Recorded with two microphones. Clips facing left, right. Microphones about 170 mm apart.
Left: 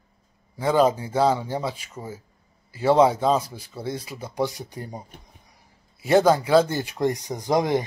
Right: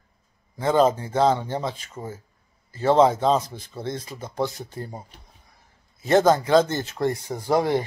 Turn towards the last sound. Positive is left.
turn(degrees=15)  # may be behind; listen again after turning